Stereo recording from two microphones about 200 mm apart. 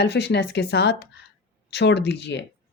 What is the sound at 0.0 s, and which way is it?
Speech, 60° left (ahead or behind).